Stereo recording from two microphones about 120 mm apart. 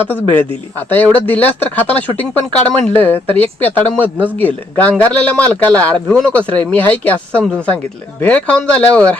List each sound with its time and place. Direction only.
0.8 s speech: 15° left (ahead or behind)